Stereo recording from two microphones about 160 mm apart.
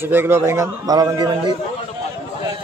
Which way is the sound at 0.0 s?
15° right (ahead or behind).